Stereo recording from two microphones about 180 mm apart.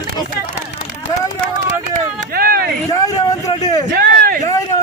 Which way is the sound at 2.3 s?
55° right (ahead or behind).